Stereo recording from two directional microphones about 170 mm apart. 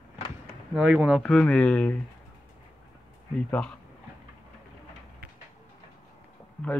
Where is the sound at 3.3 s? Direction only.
5° left (ahead or behind).